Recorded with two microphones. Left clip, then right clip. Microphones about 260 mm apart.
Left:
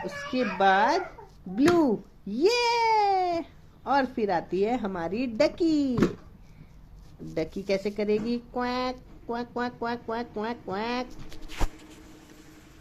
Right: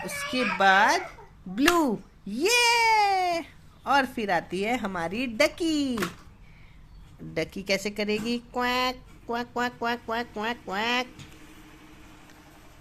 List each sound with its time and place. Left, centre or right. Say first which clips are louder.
0.0 s a child's voice: right 1 dB; right
7.3 s speech: right 1 dB; right